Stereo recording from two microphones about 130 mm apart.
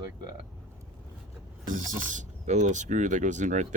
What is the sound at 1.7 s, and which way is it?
Speech, 85° right.